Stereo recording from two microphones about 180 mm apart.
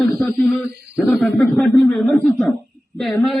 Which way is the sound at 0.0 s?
Centre (ahead or behind).